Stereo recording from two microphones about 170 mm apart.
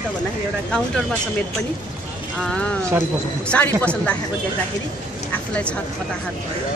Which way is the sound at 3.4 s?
5° left (ahead or behind).